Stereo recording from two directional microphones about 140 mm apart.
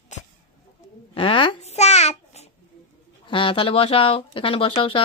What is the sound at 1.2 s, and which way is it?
Babbling, 40° left (ahead or behind).